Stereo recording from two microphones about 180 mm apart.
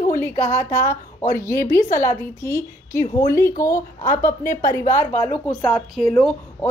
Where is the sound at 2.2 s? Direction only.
15° left (ahead or behind).